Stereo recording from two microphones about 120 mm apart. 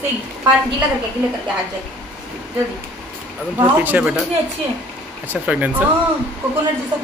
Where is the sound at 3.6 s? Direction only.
15° right (ahead or behind).